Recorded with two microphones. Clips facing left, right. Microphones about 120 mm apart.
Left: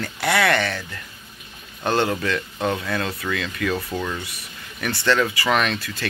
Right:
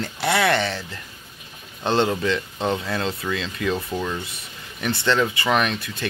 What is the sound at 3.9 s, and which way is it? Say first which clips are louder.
Speech: right 1 dB; 10° right (ahead or behind).